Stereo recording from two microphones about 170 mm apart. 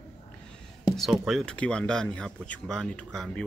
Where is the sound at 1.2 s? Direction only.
5° left (ahead or behind).